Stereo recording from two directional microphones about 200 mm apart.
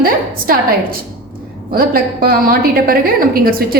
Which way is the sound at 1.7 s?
50° right (ahead or behind).